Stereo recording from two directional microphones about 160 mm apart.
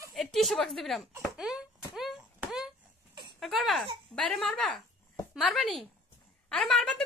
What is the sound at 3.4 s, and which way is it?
Speech, centre (ahead or behind).